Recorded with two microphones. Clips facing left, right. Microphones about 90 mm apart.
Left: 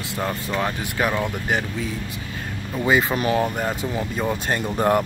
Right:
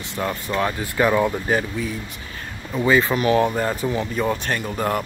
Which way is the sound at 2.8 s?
15° left (ahead or behind).